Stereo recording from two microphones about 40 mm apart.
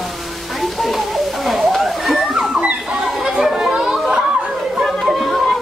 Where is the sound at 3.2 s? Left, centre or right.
Right.